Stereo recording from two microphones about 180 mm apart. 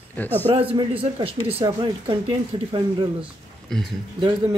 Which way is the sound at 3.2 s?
Centre (ahead or behind).